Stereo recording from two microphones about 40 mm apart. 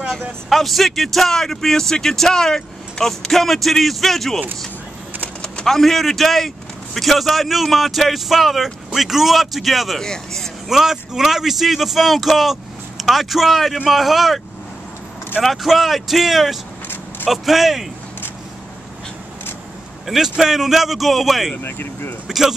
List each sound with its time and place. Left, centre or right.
0.5 s speech: centre
5.7 s speech: centre
9.9 s speech: centre
10.7 s speech: centre
15.4 s speech: centre
20.1 s speech: centre
21.6 s speech: left